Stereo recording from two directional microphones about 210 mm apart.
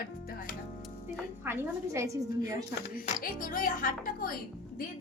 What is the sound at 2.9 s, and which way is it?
A woman's voice, 40° left (ahead or behind).